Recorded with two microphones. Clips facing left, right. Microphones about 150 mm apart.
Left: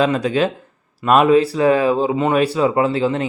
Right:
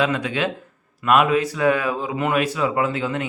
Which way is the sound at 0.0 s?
35° left (ahead or behind).